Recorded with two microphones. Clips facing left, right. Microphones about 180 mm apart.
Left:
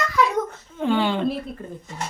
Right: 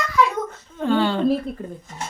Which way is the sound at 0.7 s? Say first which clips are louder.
Right 1 dB; 15° left (ahead or behind).